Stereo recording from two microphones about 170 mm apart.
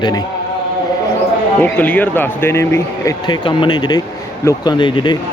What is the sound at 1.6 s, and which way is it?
A man's voice, 10° left (ahead or behind).